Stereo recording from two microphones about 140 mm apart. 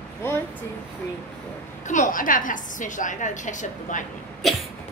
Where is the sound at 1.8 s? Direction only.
65° left (ahead or behind).